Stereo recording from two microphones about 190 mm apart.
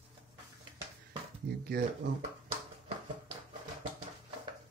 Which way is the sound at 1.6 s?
55° right (ahead or behind).